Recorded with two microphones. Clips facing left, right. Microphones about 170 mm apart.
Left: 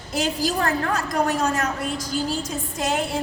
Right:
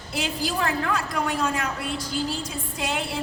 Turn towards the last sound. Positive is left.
turn(degrees=40)  # may be behind; listen again after turning